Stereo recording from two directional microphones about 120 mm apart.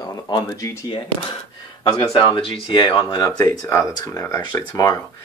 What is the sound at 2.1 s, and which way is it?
Speech, 40° left (ahead or behind).